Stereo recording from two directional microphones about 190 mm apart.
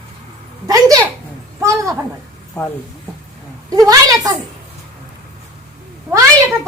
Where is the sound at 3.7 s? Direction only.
15° right (ahead or behind).